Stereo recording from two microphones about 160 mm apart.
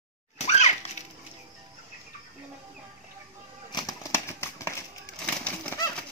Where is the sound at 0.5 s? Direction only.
45° left (ahead or behind).